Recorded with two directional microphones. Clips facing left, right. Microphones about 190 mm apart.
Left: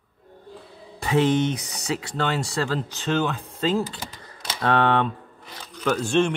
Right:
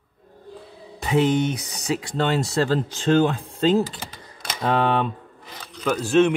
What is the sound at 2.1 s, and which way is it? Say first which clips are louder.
Speech: right 4 dB; 20° right (ahead or behind).